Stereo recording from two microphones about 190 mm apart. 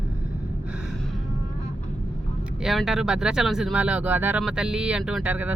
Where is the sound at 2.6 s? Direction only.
Centre (ahead or behind).